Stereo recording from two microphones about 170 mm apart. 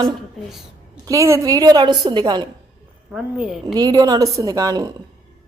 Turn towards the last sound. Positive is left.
turn(degrees=-20)  # may be behind; listen again after turning